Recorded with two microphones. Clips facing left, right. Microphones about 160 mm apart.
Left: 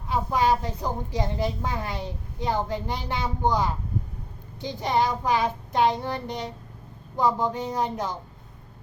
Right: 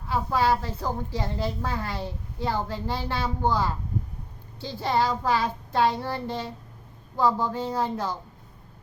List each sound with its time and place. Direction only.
0.1 s a woman's voice: 20° left (ahead or behind)